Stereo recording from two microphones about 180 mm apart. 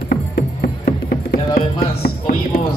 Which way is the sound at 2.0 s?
50° left (ahead or behind).